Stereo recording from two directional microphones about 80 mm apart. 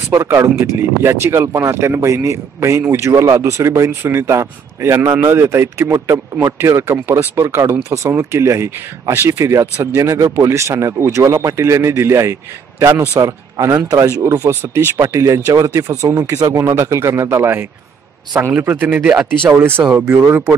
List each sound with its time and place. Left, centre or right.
0.1 s speech: right
14.5 s speech: right
19.6 s speech: right
19.9 s speech: centre